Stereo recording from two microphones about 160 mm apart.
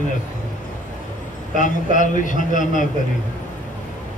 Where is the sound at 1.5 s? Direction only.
55° left (ahead or behind).